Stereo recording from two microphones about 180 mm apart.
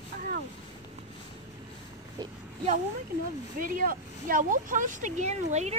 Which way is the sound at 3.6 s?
50° right (ahead or behind).